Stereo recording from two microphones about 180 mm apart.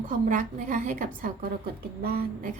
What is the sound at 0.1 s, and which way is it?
A woman's voice, 45° right (ahead or behind).